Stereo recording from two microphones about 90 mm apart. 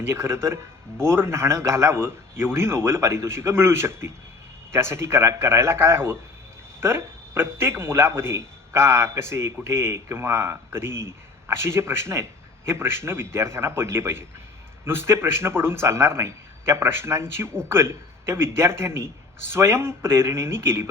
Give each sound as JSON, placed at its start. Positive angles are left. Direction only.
{"t": 0.0, "sound": "a man's voice", "side_deg": -30}